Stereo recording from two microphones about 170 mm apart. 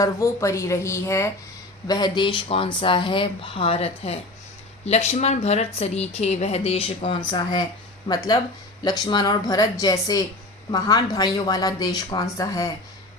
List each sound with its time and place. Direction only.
0.0 s a woman's voice: 15° left (ahead or behind)
8.8 s speech: 25° left (ahead or behind)